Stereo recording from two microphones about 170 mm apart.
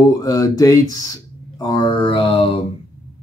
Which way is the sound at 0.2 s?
20° left (ahead or behind).